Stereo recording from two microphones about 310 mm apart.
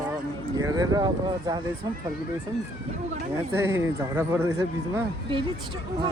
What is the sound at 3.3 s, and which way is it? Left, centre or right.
Speech, centre.